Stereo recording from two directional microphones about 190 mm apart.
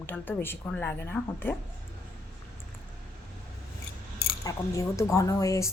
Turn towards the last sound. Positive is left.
turn(degrees=15)  # may be behind; listen again after turning